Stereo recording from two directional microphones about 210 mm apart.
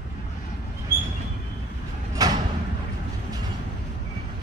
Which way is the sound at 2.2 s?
15° right (ahead or behind).